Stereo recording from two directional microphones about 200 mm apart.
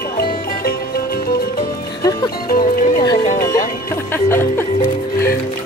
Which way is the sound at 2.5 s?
45° left (ahead or behind).